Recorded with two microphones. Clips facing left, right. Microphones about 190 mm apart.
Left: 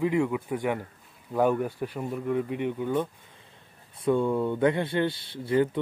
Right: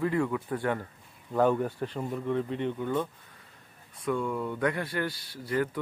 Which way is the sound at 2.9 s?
25° left (ahead or behind).